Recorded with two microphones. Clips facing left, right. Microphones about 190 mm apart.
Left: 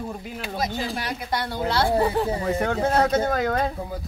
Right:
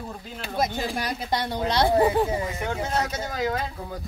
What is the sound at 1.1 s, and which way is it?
A woman's voice, 20° right (ahead or behind).